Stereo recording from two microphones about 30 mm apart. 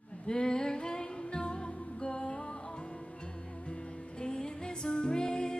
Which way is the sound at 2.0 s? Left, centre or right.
Left.